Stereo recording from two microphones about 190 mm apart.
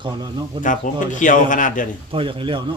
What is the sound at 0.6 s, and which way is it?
A man's voice, 40° left (ahead or behind).